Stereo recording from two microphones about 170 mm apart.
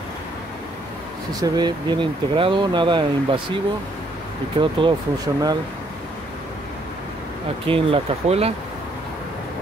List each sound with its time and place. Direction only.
1.4 s speech: 25° right (ahead or behind)
4.6 s speech: 25° right (ahead or behind)
7.6 s speech: 35° right (ahead or behind)